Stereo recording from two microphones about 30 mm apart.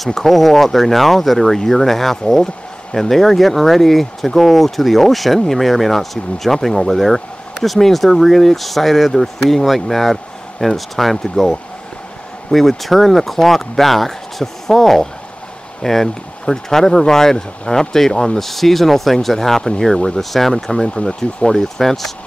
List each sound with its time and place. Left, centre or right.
0.1 s speech: centre
18.4 s speech: centre
20.5 s speech: centre